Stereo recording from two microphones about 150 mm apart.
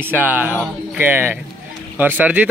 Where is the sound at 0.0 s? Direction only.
10° right (ahead or behind).